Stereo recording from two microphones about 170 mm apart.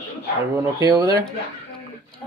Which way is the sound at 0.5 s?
20° right (ahead or behind).